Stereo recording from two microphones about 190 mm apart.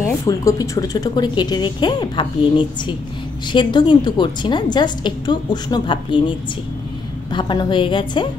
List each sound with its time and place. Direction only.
0.0 s speech: 15° left (ahead or behind)